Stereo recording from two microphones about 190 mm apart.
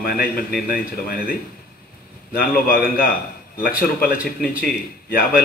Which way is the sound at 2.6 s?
50° left (ahead or behind).